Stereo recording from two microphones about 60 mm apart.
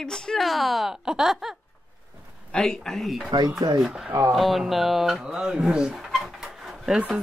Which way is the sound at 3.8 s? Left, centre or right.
Centre.